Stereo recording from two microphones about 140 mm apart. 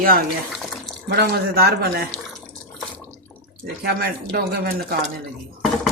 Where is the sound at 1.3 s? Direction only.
90° right.